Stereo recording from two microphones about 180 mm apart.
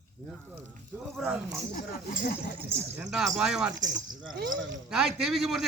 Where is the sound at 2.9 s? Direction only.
5° right (ahead or behind).